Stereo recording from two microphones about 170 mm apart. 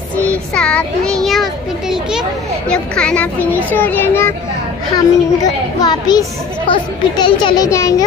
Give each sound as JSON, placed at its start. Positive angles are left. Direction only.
{"t": 0.3, "sound": "children playing", "side_deg": 5}
{"t": 2.7, "sound": "a child's voice", "side_deg": 5}